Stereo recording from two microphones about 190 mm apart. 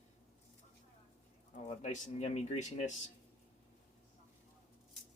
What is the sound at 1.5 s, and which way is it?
Speech, 40° left (ahead or behind).